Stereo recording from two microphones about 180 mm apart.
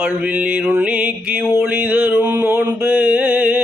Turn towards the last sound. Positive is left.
turn(degrees=-5)  # may be behind; listen again after turning